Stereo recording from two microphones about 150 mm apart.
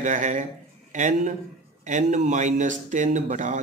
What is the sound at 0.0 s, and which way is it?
Speech, 55° right (ahead or behind).